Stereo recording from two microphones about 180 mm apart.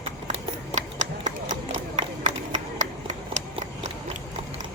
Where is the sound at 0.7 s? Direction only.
40° right (ahead or behind).